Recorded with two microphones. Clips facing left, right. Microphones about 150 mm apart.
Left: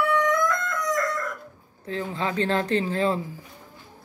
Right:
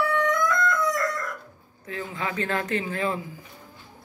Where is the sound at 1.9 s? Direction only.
30° left (ahead or behind).